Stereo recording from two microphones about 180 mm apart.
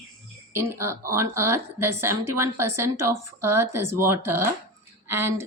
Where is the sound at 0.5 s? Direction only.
15° right (ahead or behind).